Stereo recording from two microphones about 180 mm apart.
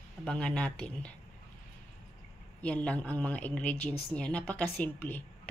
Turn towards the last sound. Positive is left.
turn(degrees=10)  # may be behind; listen again after turning